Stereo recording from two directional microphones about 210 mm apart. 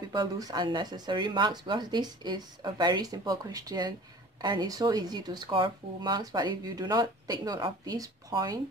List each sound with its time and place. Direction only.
0.1 s speech: 20° right (ahead or behind)